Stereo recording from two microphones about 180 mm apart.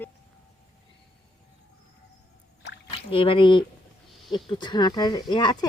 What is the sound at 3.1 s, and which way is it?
Speech, 30° left (ahead or behind).